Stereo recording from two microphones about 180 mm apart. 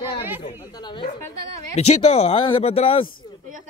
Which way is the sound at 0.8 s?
25° left (ahead or behind).